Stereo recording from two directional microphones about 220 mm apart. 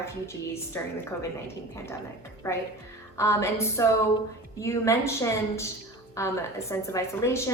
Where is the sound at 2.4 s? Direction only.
10° left (ahead or behind).